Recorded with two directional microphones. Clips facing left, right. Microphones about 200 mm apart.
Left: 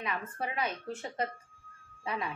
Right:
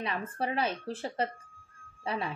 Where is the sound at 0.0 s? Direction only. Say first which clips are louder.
Right 3 dB; 35° right (ahead or behind).